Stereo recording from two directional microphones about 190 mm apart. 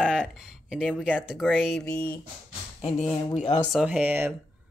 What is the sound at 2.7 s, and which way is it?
Speech, 30° left (ahead or behind).